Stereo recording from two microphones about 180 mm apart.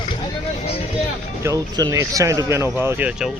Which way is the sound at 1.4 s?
20° right (ahead or behind).